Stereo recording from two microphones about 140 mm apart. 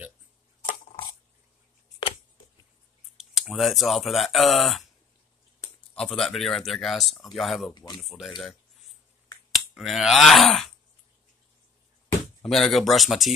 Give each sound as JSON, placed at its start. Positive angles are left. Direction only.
{"t": 3.2, "sound": "speech", "side_deg": 0}
{"t": 5.9, "sound": "speech", "side_deg": 5}
{"t": 7.7, "sound": "speech", "side_deg": 30}
{"t": 8.0, "sound": "speech", "side_deg": 0}
{"t": 9.5, "sound": "speech", "side_deg": 0}
{"t": 12.4, "sound": "speech", "side_deg": 0}